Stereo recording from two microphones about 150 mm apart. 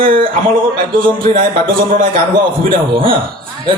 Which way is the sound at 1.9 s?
35° right (ahead or behind).